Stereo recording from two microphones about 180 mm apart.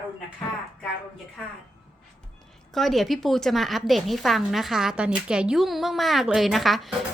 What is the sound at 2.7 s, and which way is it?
A woman's voice, centre (ahead or behind).